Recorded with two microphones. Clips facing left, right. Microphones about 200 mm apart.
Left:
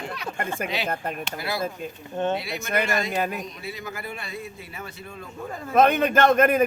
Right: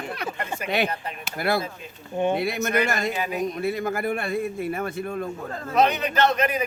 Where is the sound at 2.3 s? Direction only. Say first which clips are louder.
Right 4 dB; 55° right (ahead or behind).